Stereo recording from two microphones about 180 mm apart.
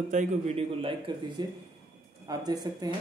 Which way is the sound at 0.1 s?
40° right (ahead or behind).